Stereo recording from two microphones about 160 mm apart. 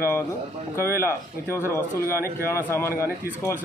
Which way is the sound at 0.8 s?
15° left (ahead or behind).